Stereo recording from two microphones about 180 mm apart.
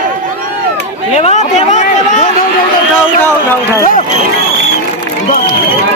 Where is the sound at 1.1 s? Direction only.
40° left (ahead or behind).